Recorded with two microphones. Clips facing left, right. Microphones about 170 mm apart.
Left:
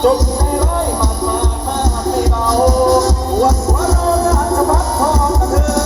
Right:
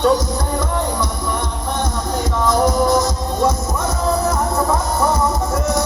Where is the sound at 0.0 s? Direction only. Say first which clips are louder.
Left 3 dB; 30° left (ahead or behind).